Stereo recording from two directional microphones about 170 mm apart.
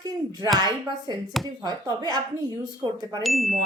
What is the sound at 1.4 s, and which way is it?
Speech, centre (ahead or behind).